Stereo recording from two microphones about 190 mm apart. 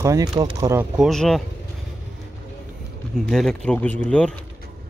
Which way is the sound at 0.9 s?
Centre (ahead or behind).